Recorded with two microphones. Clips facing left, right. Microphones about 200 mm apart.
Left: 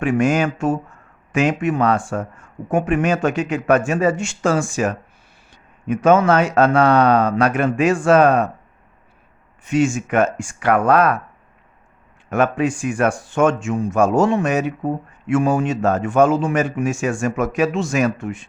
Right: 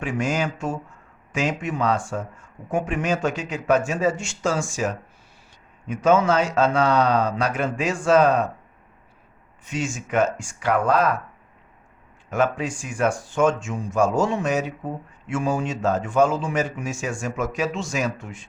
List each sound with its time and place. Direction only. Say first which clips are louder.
0.0 s speech: left 7 dB; 55° left (ahead or behind)
9.6 s speech: left 10 dB; 60° left (ahead or behind)
12.3 s speech: left 5 dB; 60° left (ahead or behind)